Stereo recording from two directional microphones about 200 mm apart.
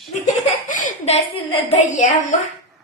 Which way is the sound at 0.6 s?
40° left (ahead or behind).